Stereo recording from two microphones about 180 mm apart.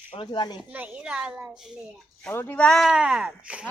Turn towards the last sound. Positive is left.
turn(degrees=-5)  # may be behind; listen again after turning